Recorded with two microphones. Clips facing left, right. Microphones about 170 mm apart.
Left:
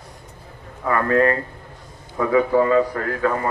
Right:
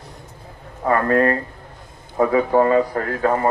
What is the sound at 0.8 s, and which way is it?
A man's voice, 40° right (ahead or behind).